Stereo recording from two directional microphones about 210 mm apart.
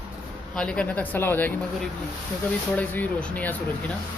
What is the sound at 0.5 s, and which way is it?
Speech, 5° left (ahead or behind).